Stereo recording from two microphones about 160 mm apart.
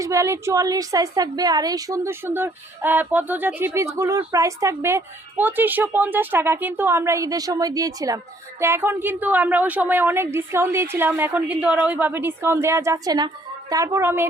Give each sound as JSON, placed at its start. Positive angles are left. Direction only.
{"t": 0.0, "sound": "a woman's voice", "side_deg": -20}